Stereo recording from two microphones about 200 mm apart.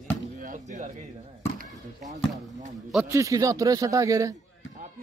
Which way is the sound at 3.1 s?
15° right (ahead or behind).